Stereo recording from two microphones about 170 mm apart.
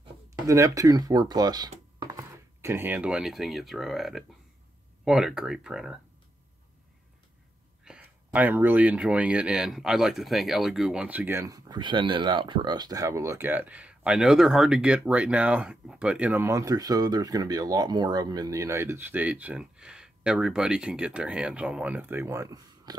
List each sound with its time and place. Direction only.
0.5 s speech: 20° right (ahead or behind); by 5.9 s 5° right (ahead or behind)
7.8 s speech: 5° right (ahead or behind)